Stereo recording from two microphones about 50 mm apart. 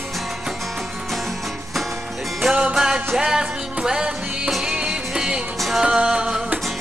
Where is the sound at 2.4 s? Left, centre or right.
Centre.